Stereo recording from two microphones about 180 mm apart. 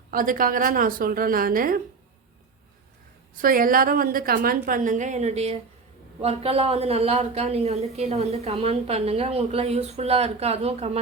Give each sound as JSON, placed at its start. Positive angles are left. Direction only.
{"t": 0.1, "sound": "a woman's voice", "side_deg": -50}
{"t": 3.4, "sound": "a woman's voice", "side_deg": -50}